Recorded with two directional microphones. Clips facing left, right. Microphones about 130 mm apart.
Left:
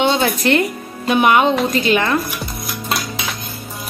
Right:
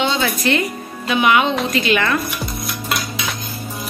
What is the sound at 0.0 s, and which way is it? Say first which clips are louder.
Music: left 3 dB; 55° left (ahead or behind).